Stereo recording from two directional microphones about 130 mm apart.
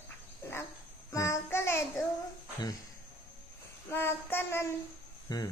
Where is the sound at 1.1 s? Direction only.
25° left (ahead or behind).